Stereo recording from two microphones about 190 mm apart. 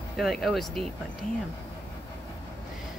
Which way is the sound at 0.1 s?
Centre (ahead or behind).